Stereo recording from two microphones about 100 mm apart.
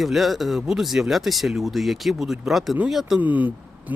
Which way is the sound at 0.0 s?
Centre (ahead or behind).